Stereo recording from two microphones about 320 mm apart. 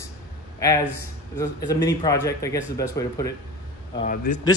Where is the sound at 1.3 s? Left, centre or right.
Centre.